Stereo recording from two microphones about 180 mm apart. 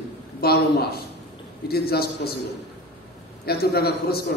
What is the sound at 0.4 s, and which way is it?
A man's voice, 60° left (ahead or behind).